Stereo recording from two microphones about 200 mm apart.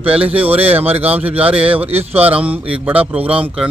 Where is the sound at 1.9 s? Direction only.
30° right (ahead or behind).